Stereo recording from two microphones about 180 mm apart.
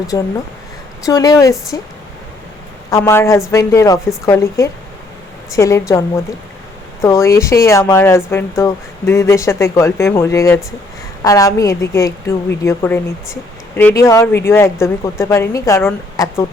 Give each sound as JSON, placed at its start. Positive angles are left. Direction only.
{"t": 0.1, "sound": "a woman's voice", "side_deg": 20}
{"t": 2.9, "sound": "speech", "side_deg": 15}